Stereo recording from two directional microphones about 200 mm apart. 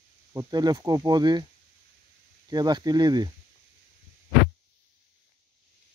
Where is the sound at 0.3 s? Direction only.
20° right (ahead or behind).